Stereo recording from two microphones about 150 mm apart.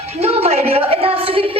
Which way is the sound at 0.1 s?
45° right (ahead or behind).